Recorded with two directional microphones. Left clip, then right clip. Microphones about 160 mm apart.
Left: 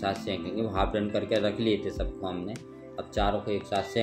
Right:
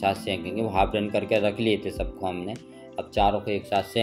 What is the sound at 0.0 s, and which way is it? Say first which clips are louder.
Speech: right 5 dB; 20° right (ahead or behind).